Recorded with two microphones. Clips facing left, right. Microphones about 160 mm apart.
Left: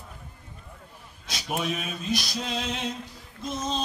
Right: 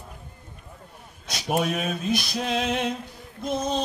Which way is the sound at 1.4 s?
50° right (ahead or behind).